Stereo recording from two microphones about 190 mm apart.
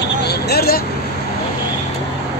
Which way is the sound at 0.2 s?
60° left (ahead or behind).